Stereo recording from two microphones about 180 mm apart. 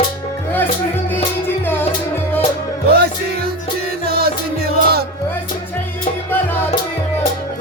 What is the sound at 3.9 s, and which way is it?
Music, 60° right (ahead or behind).